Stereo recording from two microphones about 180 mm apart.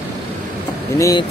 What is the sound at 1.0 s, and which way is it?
Speech, 20° left (ahead or behind).